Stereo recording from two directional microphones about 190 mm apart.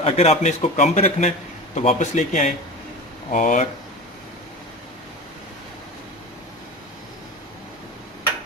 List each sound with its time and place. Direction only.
0.0 s a man's voice: 35° left (ahead or behind)